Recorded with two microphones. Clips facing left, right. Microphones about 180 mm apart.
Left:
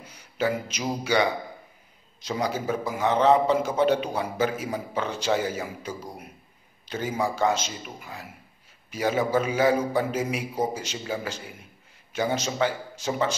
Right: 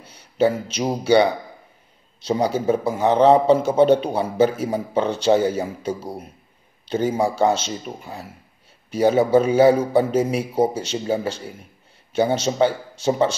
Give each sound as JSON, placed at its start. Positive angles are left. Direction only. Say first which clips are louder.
{"t": 0.0, "sound": "a man's voice", "louder": "right 8 dB", "side_deg": -30}